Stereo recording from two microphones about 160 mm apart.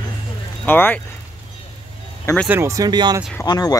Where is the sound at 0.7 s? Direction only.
10° left (ahead or behind).